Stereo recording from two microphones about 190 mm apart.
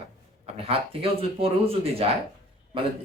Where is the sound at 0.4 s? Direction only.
30° right (ahead or behind).